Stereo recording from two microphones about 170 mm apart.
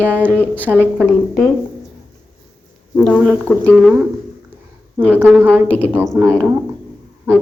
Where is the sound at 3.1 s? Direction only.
10° right (ahead or behind).